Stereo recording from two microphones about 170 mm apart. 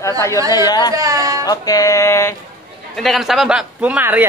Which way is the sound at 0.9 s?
20° right (ahead or behind).